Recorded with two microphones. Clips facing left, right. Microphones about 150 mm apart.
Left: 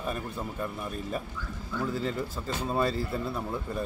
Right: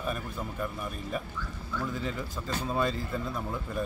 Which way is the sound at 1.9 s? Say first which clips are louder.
Left 4 dB; 35° left (ahead or behind).